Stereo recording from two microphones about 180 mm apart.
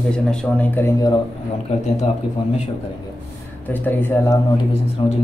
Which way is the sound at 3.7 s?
10° left (ahead or behind).